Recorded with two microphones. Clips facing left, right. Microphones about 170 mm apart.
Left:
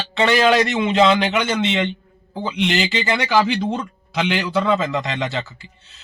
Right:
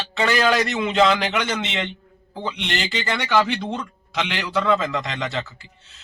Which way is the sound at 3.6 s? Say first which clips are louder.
Left 5 dB; 30° left (ahead or behind).